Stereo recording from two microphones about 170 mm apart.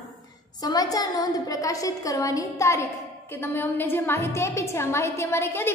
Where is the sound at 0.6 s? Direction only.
20° left (ahead or behind).